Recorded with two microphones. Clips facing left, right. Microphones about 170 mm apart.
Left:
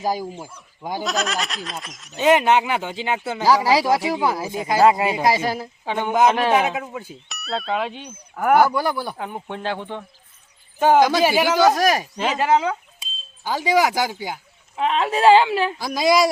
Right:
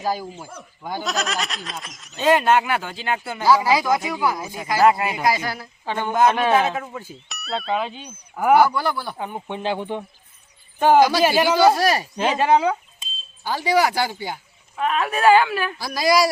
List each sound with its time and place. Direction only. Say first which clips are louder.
0.0 s speech: left 1 dB; 15° left (ahead or behind)
1.0 s speech: left 1 dB; centre (ahead or behind)
2.1 s speech: left 1 dB; 15° left (ahead or behind)
3.6 s speech: left 2 dB; 30° left (ahead or behind)
5.8 s speech: left 1 dB; 15° left (ahead or behind)
6.8 s speech: left 1 dB; 5° left (ahead or behind)
8.6 s speech: left 1 dB; 15° left (ahead or behind)
9.1 s speech: right 1 dB; centre (ahead or behind)
9.6 s speech: right 3 dB; 15° right (ahead or behind)
11.1 s speech: even; 15° left (ahead or behind)
14.8 s speech: left 2 dB; 25° left (ahead or behind)